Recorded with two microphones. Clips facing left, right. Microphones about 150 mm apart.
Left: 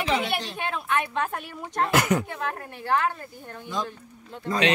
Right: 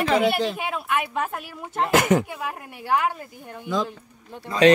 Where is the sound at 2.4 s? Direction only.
10° right (ahead or behind).